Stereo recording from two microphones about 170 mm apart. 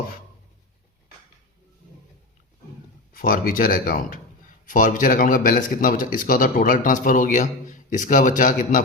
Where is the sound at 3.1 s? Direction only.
55° left (ahead or behind).